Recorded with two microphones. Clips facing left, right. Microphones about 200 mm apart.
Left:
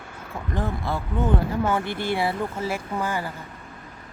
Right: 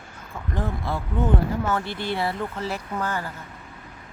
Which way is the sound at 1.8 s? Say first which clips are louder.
Left 2 dB; 50° left (ahead or behind).